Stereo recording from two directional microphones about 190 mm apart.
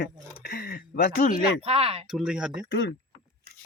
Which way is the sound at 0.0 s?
55° left (ahead or behind).